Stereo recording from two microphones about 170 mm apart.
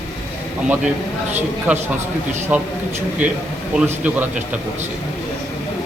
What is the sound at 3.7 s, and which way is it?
Speech, 10° right (ahead or behind).